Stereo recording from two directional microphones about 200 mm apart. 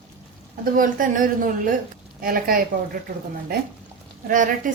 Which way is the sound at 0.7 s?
45° right (ahead or behind).